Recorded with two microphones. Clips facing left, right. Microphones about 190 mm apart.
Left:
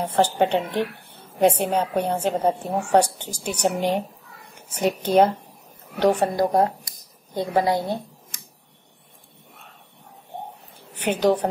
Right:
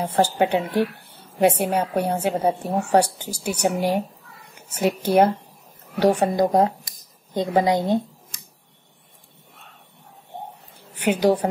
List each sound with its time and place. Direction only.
0.0 s a woman's voice: 10° right (ahead or behind)
11.0 s a woman's voice: 10° right (ahead or behind)